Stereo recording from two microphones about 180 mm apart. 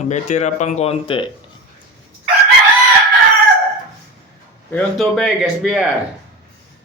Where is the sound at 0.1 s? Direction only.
40° left (ahead or behind).